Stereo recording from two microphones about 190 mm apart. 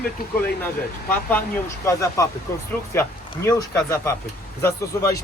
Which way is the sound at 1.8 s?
15° left (ahead or behind).